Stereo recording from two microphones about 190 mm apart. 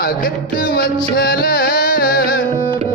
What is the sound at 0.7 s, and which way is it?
Music, 50° left (ahead or behind).